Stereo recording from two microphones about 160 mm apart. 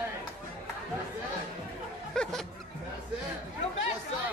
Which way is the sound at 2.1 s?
5° left (ahead or behind).